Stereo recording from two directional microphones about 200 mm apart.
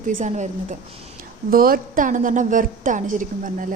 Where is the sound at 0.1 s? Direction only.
40° right (ahead or behind).